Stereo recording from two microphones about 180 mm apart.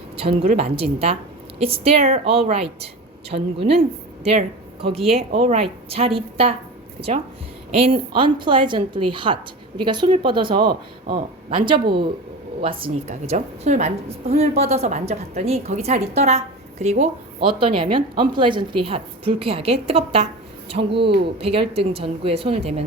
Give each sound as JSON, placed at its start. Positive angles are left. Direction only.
{"t": 0.2, "sound": "a woman's voice", "side_deg": -30}
{"t": 7.8, "sound": "a woman's voice", "side_deg": -30}
{"t": 10.7, "sound": "speech", "side_deg": -50}
{"t": 11.5, "sound": "a woman's voice", "side_deg": -25}